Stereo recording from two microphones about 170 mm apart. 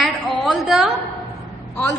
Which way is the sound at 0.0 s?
Centre (ahead or behind).